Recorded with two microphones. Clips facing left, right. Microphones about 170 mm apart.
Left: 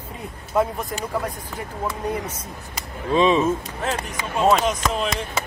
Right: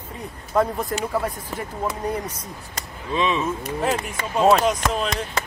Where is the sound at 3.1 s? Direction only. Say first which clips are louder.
Left 5 dB; 35° left (ahead or behind).